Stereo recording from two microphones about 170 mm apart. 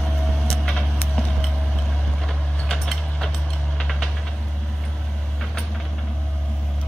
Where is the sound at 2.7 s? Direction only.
5° left (ahead or behind).